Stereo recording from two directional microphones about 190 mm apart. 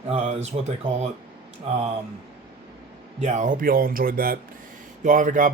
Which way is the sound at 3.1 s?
40° right (ahead or behind).